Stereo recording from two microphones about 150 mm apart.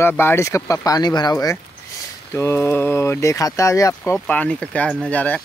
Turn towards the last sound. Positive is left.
turn(degrees=10)  # may be behind; listen again after turning